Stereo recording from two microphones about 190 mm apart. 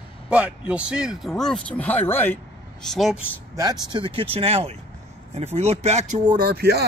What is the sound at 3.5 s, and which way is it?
Speech, 20° right (ahead or behind).